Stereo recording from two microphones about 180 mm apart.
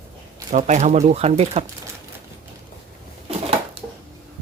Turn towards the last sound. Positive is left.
turn(degrees=-35)  # may be behind; listen again after turning